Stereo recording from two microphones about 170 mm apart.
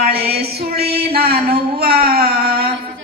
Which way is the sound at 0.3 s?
65° right (ahead or behind).